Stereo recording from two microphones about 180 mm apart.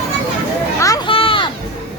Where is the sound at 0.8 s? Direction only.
20° left (ahead or behind).